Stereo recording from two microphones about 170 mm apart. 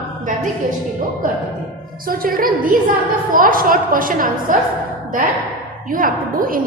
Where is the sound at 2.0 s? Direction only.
60° right (ahead or behind).